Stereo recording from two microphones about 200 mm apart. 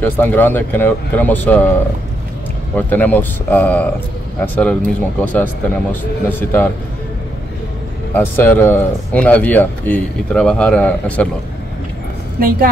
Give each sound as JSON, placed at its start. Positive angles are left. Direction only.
{"t": 0.0, "sound": "speech", "side_deg": 10}
{"t": 8.1, "sound": "speech", "side_deg": 10}
{"t": 12.4, "sound": "speech", "side_deg": -45}